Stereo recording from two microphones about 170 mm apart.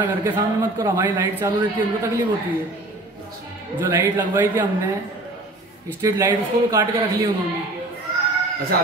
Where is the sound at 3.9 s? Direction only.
10° right (ahead or behind).